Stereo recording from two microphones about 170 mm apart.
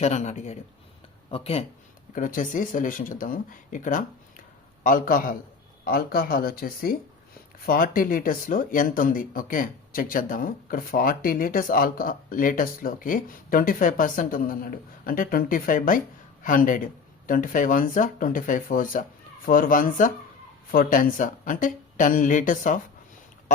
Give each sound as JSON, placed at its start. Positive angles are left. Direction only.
{"t": 0.0, "sound": "speech", "side_deg": 45}
{"t": 2.1, "sound": "speech", "side_deg": 50}